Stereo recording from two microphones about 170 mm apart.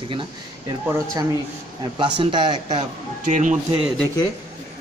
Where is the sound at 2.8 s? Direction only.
45° right (ahead or behind).